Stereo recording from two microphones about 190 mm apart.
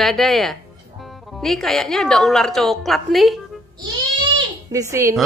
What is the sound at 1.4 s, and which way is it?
A woman's voice, centre (ahead or behind).